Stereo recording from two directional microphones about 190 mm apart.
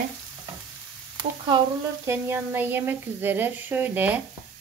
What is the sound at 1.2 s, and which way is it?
Frying, 25° right (ahead or behind).